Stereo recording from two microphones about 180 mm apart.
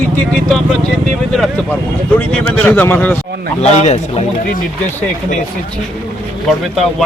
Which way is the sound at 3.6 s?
35° left (ahead or behind).